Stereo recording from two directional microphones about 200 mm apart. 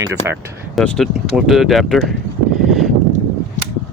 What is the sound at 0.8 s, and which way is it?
Speech, centre (ahead or behind).